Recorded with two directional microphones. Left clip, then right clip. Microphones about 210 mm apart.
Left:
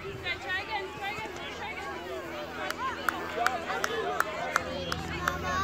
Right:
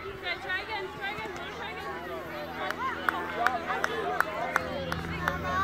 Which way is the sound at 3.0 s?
50° left (ahead or behind).